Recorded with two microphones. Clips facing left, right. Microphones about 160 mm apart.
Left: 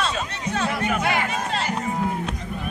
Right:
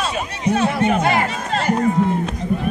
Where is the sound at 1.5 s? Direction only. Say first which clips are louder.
Right 8 dB; 50° right (ahead or behind).